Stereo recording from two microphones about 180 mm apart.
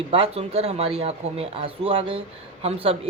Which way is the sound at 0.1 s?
30° right (ahead or behind).